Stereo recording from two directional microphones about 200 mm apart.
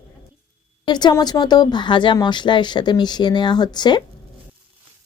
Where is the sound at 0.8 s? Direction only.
20° left (ahead or behind).